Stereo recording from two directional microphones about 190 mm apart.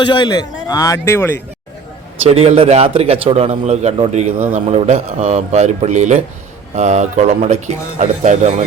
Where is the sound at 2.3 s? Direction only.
30° right (ahead or behind).